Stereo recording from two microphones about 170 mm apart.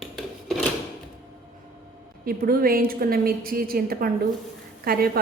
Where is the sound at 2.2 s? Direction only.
60° right (ahead or behind).